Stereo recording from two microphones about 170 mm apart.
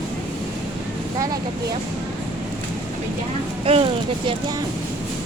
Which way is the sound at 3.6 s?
35° right (ahead or behind).